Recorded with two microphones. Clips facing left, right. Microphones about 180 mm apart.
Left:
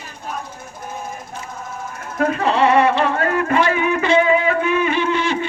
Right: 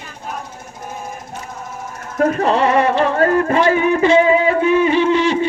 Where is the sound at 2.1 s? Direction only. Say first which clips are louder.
Right 3 dB; 45° right (ahead or behind).